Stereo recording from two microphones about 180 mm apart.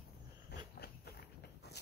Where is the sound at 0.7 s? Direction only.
60° left (ahead or behind).